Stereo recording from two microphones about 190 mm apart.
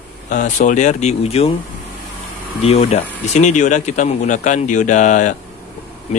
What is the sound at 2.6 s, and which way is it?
Speech, 35° left (ahead or behind).